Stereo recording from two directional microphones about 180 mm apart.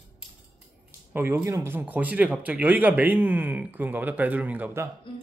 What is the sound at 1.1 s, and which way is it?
Speech, 10° right (ahead or behind).